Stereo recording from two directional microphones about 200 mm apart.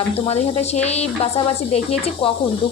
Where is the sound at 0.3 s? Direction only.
30° left (ahead or behind).